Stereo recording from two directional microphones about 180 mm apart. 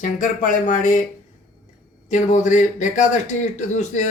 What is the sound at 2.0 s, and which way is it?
A man's voice, 40° left (ahead or behind).